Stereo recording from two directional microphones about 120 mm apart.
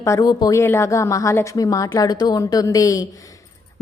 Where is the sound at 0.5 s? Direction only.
20° left (ahead or behind).